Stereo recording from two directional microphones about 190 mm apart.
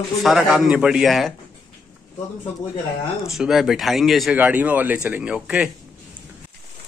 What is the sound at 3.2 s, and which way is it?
Speech, centre (ahead or behind).